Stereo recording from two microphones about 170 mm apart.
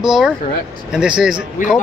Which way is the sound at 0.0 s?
5° right (ahead or behind).